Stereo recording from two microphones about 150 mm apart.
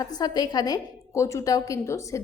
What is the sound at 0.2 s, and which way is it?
A woman's voice, 25° left (ahead or behind).